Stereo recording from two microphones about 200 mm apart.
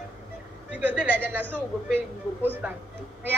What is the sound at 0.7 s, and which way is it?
A man's voice, 10° right (ahead or behind).